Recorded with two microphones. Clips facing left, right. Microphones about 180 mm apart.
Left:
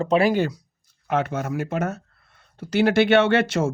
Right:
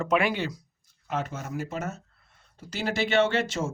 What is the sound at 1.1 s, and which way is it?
Speech, 70° left (ahead or behind).